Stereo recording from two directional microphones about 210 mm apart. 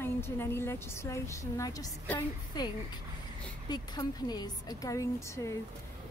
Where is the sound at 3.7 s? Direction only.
20° left (ahead or behind).